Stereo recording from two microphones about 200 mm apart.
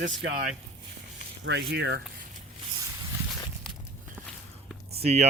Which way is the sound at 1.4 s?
60° right (ahead or behind).